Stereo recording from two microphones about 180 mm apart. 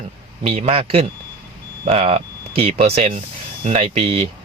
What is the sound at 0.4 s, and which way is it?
A man's voice, 35° right (ahead or behind).